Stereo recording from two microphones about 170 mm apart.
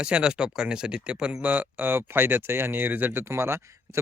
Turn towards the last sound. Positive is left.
turn(degrees=-15)  # may be behind; listen again after turning